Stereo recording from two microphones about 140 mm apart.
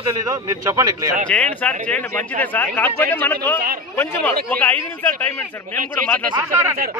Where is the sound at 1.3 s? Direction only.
5° left (ahead or behind).